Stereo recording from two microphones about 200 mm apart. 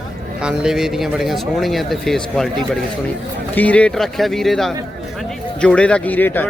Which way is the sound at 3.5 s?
5° left (ahead or behind).